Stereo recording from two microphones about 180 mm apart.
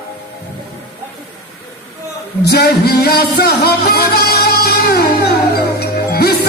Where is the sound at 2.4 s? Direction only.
60° left (ahead or behind).